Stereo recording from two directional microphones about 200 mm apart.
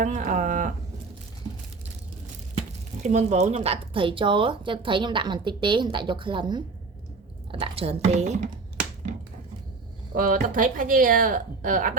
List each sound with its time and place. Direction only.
0.0 s a sound: 40° right (ahead or behind)
3.0 s a woman's voice: 35° right (ahead or behind)
10.2 s speech: 40° right (ahead or behind)